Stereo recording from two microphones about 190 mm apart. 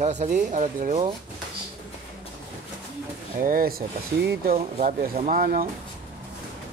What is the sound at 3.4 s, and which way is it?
Speech, 50° right (ahead or behind).